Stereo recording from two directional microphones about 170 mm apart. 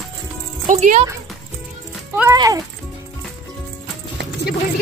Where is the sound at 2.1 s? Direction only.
10° right (ahead or behind).